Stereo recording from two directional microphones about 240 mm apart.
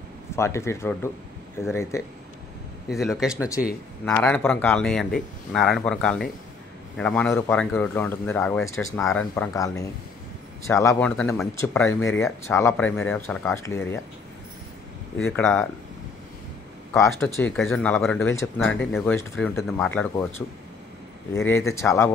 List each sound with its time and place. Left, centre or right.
0.4 s speech: centre
2.9 s a man's voice: centre
15.1 s a man's voice: centre
16.9 s a man's voice: centre